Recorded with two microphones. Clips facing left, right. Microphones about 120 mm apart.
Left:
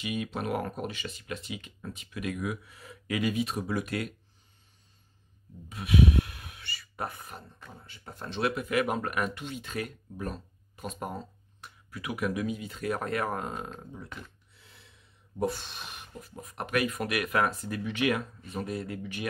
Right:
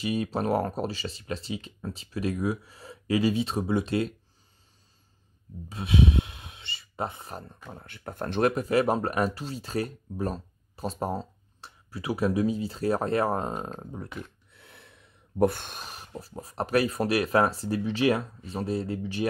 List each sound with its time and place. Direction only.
0.0 s speech: 35° right (ahead or behind)
5.7 s speech: 30° right (ahead or behind)
7.7 s speech: 60° right (ahead or behind); by 14.0 s 40° right (ahead or behind)
14.5 s speech: 60° right (ahead or behind); by 19.2 s 30° right (ahead or behind)